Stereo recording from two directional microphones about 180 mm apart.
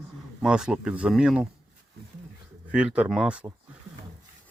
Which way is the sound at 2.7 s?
5° right (ahead or behind).